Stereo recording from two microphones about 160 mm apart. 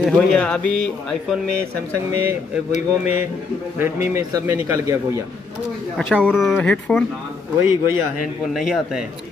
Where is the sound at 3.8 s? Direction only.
15° right (ahead or behind).